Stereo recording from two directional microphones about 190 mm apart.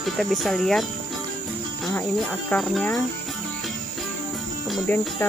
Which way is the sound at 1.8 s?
Centre (ahead or behind).